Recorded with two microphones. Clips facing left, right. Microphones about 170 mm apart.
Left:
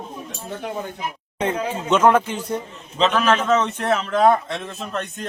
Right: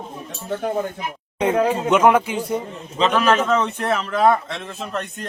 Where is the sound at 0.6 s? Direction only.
45° right (ahead or behind).